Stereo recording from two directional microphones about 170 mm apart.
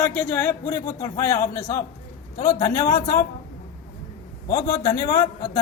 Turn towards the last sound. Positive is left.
turn(degrees=25)  # may be behind; listen again after turning